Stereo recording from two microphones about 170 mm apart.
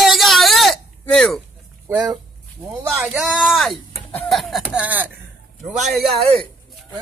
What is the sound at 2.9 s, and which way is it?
Speech, centre (ahead or behind).